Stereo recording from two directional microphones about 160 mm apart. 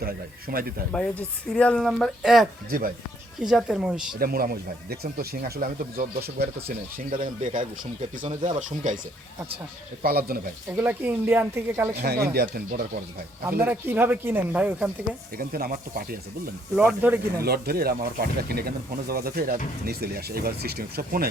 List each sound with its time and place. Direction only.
0.0 s speech: 65° right (ahead or behind)
0.9 s speech: 5° left (ahead or behind)
2.6 s speech: 65° right (ahead or behind)
3.4 s speech: 5° right (ahead or behind)
4.2 s speech: 65° right (ahead or behind)
10.0 s speech: 70° right (ahead or behind)
10.7 s speech: 10° right (ahead or behind)
12.0 s speech: 90° right; by 12.8 s 75° right (ahead or behind)
13.4 s speech: 15° right (ahead or behind)
15.4 s speech: 65° right (ahead or behind)
16.7 s speech: 10° right (ahead or behind)
17.4 s speech: 75° right (ahead or behind)